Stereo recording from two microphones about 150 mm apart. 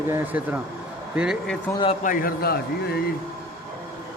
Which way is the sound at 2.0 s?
80° left.